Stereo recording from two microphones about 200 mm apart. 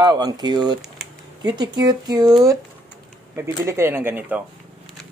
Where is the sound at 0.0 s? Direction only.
20° right (ahead or behind).